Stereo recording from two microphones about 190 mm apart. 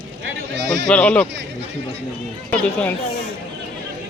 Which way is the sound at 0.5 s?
70° right (ahead or behind).